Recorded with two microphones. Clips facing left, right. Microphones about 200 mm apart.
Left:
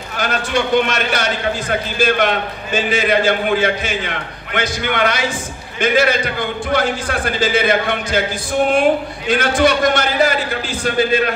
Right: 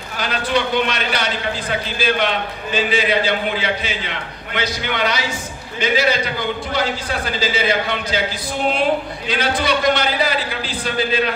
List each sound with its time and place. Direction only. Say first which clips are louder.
0.2 s a man's voice: left 1 dB; 45° left (ahead or behind)
9.3 s a man's voice: left 5 dB; 50° left (ahead or behind)